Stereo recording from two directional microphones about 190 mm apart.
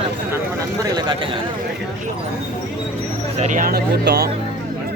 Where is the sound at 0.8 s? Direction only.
20° right (ahead or behind).